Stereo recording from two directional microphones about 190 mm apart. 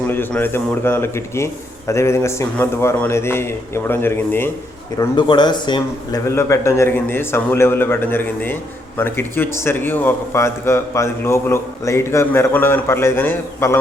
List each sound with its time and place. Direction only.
0.1 s a man's voice: 10° left (ahead or behind)
4.9 s a man's voice: 25° left (ahead or behind)